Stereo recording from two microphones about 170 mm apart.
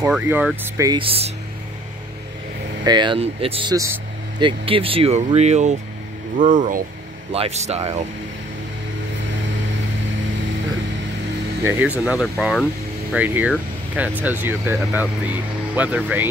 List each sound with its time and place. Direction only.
0.1 s speech: 10° right (ahead or behind)
0.7 s speech: 25° right (ahead or behind)
2.8 s speech: 25° right (ahead or behind); by 6.8 s 50° right (ahead or behind)
7.3 s speech: 40° right (ahead or behind)
11.6 s speech: 15° right (ahead or behind)
12.0 s speech: 5° right (ahead or behind)